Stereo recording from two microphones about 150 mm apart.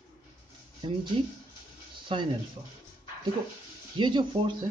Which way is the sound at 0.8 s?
30° right (ahead or behind).